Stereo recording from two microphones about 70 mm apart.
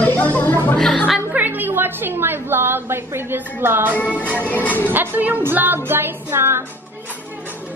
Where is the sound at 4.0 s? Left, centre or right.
Left.